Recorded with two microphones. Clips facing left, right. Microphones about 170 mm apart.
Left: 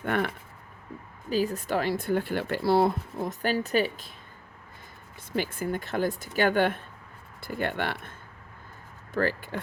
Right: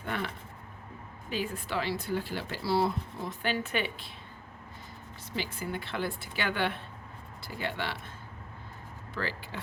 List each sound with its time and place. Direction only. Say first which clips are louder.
0.0 s speech: left 7 dB; 55° left (ahead or behind)
1.3 s speech: left 7 dB; 40° left (ahead or behind)
5.3 s speech: left 6 dB; 50° left (ahead or behind)
9.1 s speech: left 9 dB; 50° left (ahead or behind)